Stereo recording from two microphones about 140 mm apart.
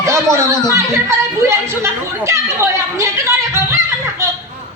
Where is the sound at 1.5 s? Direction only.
20° right (ahead or behind).